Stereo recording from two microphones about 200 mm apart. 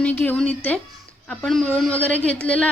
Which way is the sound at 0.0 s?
10° left (ahead or behind).